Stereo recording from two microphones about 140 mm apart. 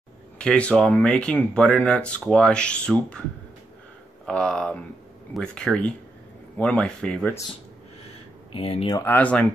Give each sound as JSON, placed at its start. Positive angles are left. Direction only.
{"t": 0.4, "sound": "speech", "side_deg": 5}
{"t": 4.3, "sound": "speech", "side_deg": 5}
{"t": 8.5, "sound": "speech", "side_deg": 45}
{"t": 9.0, "sound": "speech", "side_deg": 10}